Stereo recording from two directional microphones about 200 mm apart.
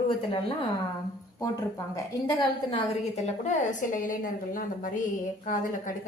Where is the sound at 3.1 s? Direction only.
35° left (ahead or behind).